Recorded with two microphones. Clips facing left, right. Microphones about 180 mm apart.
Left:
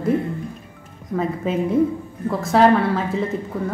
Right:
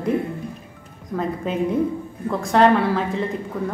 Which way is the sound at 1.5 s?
Centre (ahead or behind).